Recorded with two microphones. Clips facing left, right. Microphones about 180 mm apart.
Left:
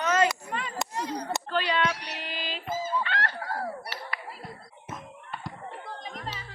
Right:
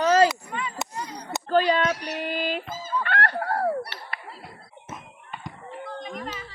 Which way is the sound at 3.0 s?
60° right (ahead or behind).